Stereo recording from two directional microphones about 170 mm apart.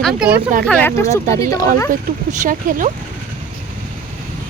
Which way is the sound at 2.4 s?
50° right (ahead or behind).